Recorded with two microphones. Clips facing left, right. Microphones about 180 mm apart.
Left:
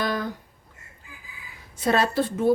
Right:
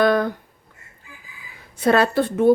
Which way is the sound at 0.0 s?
60° right (ahead or behind).